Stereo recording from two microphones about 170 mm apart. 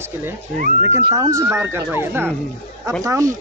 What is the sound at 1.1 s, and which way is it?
Speech, 20° right (ahead or behind).